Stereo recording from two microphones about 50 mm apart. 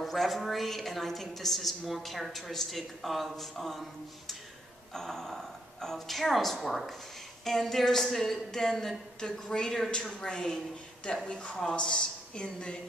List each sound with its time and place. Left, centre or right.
0.0 s a woman's voice: centre; by 12.7 s left